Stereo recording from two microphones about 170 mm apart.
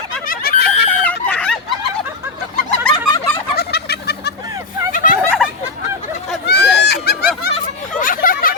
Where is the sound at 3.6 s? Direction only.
70° left (ahead or behind).